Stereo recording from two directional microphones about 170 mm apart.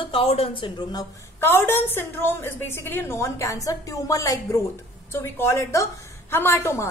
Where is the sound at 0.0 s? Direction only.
35° left (ahead or behind).